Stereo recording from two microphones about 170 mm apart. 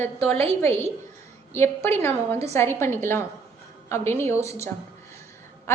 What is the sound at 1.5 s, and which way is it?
A woman's voice, 15° left (ahead or behind).